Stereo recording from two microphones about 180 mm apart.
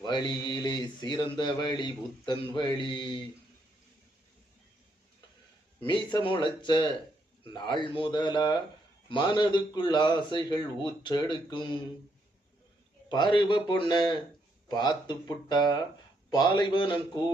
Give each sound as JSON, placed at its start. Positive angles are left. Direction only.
{"t": 0.0, "sound": "speech", "side_deg": 25}
{"t": 6.1, "sound": "speech", "side_deg": 25}
{"t": 13.1, "sound": "speech", "side_deg": 25}